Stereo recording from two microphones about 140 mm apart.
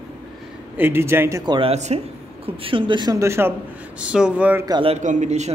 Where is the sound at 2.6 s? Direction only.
35° right (ahead or behind).